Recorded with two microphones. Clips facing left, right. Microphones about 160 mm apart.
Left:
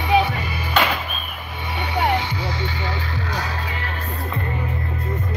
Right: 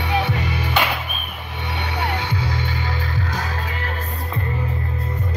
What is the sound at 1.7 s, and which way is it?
Music, 70° right (ahead or behind).